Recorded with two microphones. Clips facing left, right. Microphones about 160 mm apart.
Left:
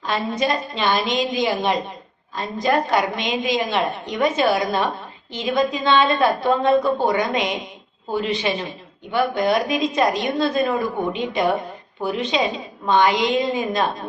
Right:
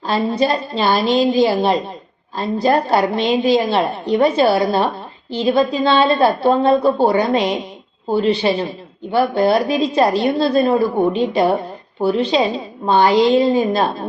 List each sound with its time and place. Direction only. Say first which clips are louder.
0.1 s a woman's voice: right 5 dB; 30° right (ahead or behind)